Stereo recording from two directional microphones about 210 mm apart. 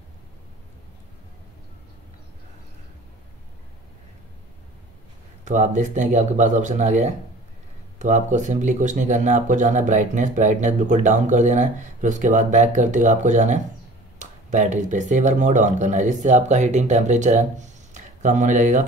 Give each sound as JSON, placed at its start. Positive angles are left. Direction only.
{"t": 5.4, "sound": "speech", "side_deg": -35}